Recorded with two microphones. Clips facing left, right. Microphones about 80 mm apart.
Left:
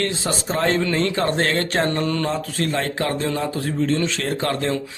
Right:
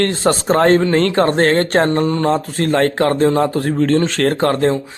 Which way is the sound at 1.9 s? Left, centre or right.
Right.